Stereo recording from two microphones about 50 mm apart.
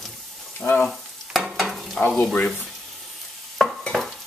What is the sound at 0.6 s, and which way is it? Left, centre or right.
Speech, left.